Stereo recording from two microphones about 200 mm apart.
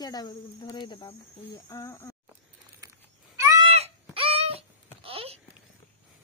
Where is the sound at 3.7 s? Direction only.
30° right (ahead or behind).